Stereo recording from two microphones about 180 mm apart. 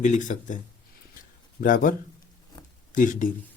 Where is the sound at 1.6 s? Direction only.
50° left (ahead or behind).